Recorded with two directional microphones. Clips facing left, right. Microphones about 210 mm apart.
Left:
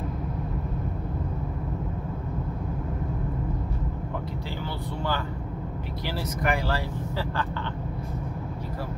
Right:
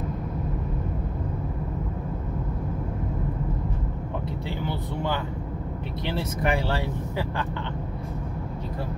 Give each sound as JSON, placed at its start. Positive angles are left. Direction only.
{"t": 4.6, "sound": "speech", "side_deg": -20}